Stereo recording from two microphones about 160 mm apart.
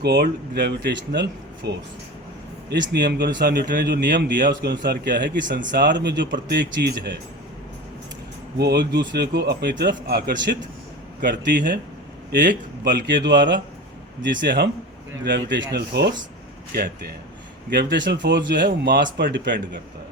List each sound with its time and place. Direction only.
0.0 s a man's voice: 90° right
8.5 s a man's voice: 90° right
12.8 s a man's voice: 90° right
17.7 s a man's voice: 90° right